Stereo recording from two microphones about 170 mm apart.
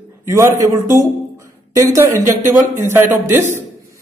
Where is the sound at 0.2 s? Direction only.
15° right (ahead or behind).